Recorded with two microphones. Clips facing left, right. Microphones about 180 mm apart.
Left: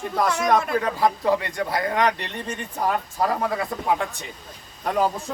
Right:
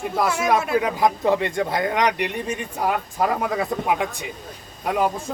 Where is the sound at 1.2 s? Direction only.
25° right (ahead or behind).